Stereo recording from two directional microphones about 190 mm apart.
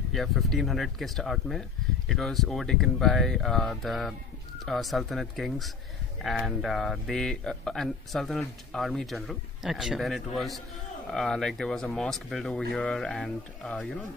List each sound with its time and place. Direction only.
0.1 s speech: centre (ahead or behind)